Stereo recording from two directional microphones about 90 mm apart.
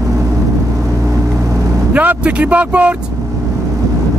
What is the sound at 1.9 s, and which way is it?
Vehicle, 15° right (ahead or behind).